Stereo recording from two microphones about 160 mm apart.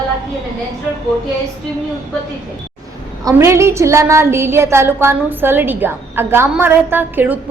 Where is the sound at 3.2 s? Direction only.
20° right (ahead or behind).